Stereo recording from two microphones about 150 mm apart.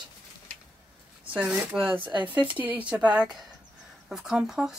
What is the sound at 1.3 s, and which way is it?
Speech, 10° right (ahead or behind).